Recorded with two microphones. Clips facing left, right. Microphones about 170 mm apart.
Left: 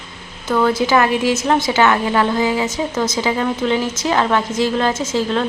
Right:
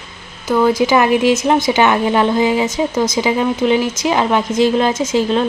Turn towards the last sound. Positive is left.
turn(degrees=-20)  # may be behind; listen again after turning